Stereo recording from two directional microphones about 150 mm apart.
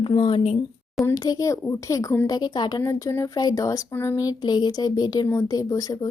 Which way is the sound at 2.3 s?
30° left (ahead or behind).